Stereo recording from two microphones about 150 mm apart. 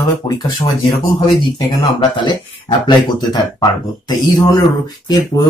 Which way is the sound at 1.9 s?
30° left (ahead or behind).